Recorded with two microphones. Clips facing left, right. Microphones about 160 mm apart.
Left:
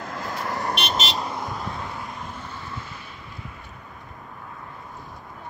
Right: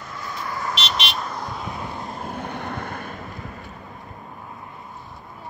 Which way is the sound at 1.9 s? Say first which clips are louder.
Right 2 dB; 25° right (ahead or behind).